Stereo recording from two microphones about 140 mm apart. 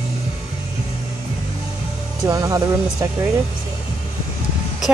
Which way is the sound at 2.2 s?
25° right (ahead or behind).